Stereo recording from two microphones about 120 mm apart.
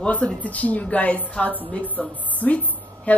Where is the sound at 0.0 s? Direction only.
10° left (ahead or behind).